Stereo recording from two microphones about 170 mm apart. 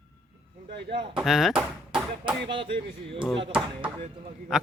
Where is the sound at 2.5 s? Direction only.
30° right (ahead or behind).